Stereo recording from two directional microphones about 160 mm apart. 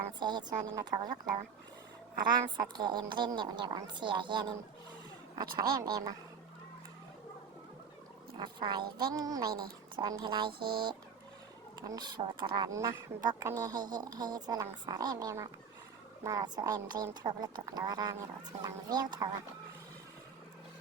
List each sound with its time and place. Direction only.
0.2 s speech: 25° right (ahead or behind)
8.4 s speech: 30° right (ahead or behind)